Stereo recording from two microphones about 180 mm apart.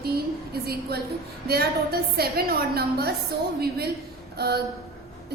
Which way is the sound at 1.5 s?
60° right (ahead or behind).